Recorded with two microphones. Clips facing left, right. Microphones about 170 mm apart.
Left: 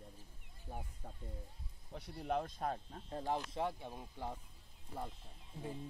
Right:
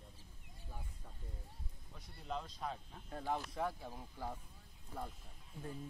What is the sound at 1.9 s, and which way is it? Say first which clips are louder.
Speech: left 6 dB; 65° left (ahead or behind).